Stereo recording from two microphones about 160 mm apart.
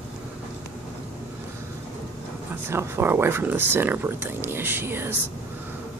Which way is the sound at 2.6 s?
15° right (ahead or behind).